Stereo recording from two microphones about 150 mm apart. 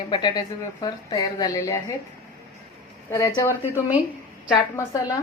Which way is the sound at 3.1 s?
20° left (ahead or behind).